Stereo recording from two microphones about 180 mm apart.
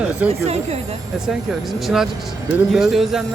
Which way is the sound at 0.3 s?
35° right (ahead or behind).